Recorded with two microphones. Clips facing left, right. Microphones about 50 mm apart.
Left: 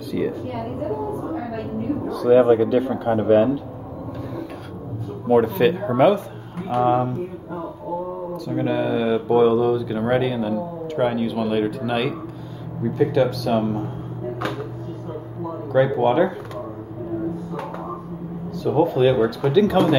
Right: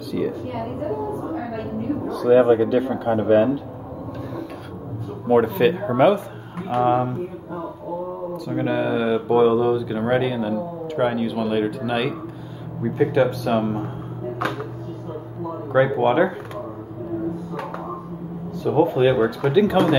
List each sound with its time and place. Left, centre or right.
0.7 s speech: centre
5.3 s speech: centre
8.5 s speech: centre
12.8 s speech: right
15.7 s speech: right
18.8 s speech: right